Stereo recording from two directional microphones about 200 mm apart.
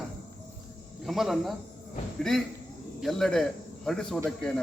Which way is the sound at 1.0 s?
Centre (ahead or behind).